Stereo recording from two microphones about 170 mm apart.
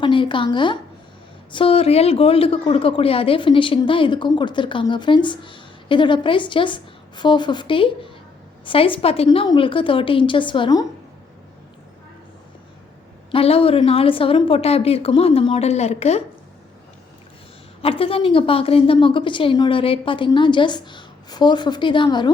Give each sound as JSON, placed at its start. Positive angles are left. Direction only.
{"t": 0.0, "sound": "a woman's voice", "side_deg": 30}
{"t": 13.3, "sound": "a woman's voice", "side_deg": 35}
{"t": 17.8, "sound": "a woman's voice", "side_deg": 35}